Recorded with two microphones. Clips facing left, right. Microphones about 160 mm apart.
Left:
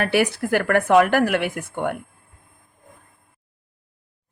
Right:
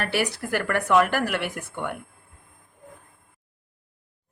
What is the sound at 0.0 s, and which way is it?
Speech, 55° left (ahead or behind).